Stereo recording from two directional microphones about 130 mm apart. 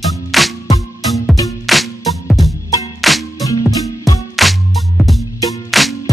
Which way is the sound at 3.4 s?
25° left (ahead or behind).